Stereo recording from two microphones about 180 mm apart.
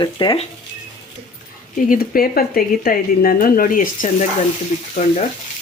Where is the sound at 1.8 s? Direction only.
55° left (ahead or behind).